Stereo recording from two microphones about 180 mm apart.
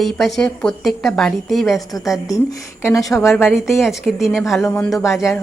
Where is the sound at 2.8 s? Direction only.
15° left (ahead or behind).